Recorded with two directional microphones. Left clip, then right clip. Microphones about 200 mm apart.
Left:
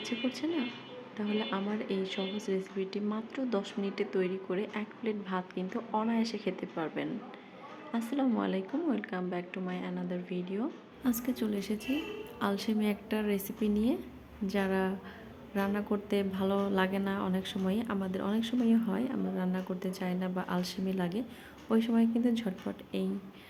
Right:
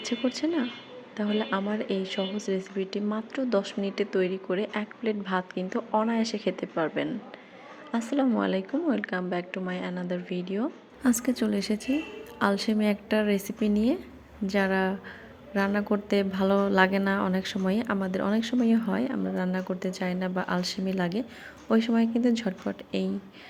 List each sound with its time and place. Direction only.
0.0 s a woman's voice: 15° right (ahead or behind)